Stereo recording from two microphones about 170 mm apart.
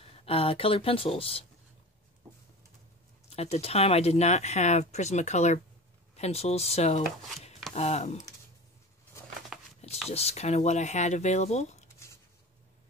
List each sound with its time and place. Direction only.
0.0 s speech: 35° left (ahead or behind)
3.3 s speech: 40° left (ahead or behind)
10.0 s speech: 40° left (ahead or behind)